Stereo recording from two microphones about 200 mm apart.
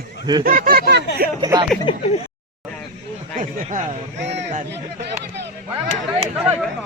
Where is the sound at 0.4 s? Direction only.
45° right (ahead or behind).